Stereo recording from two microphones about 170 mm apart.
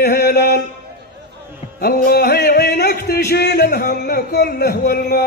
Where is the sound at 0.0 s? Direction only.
70° left (ahead or behind).